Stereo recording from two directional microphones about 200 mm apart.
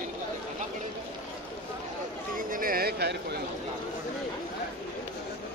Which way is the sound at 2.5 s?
45° right (ahead or behind).